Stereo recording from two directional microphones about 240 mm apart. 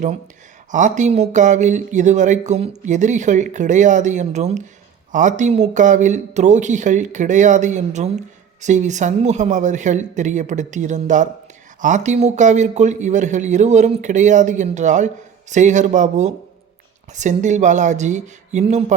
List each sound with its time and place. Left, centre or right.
0.7 s speech: right